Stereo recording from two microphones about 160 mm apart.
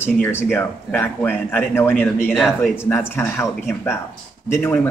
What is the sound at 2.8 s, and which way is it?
Speech, 15° left (ahead or behind).